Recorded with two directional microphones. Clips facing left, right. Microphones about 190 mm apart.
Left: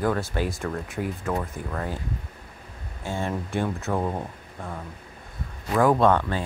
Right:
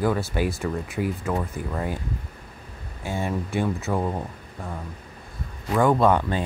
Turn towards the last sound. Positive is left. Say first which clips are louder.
# right 1 dB
turn(degrees=-15)  # may be behind; listen again after turning